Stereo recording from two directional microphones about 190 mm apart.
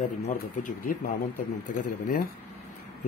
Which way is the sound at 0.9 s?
50° left (ahead or behind).